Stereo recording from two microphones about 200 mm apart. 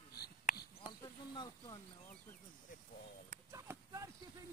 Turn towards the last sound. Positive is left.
turn(degrees=-15)  # may be behind; listen again after turning